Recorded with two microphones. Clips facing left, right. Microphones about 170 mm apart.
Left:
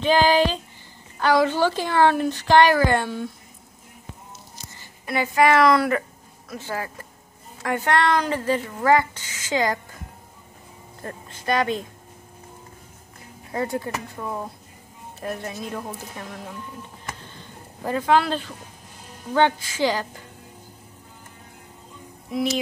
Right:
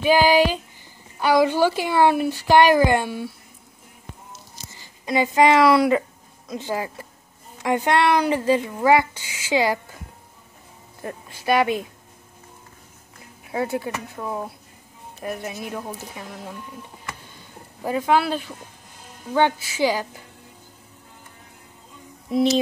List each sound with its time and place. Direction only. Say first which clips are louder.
0.0 s speech: right 2 dB; 10° right (ahead or behind)
4.7 s speech: right 4 dB; 15° right (ahead or behind)
11.0 s speech: right 3 dB; 10° right (ahead or behind)
13.5 s speech: right 1 dB; 5° right (ahead or behind)
17.2 s vehicle: left 2 dB; 10° right (ahead or behind)
19.3 s speech: even; 10° right (ahead or behind)
22.3 s music: right 5 dB; 30° right (ahead or behind)